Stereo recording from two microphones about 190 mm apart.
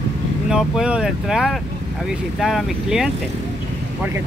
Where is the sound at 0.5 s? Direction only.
5° right (ahead or behind).